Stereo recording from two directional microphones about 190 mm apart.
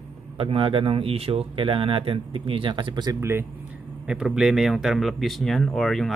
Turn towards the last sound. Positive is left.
turn(degrees=0)  # may be behind; listen again after turning